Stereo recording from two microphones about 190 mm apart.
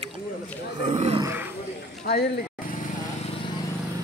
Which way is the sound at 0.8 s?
35° right (ahead or behind).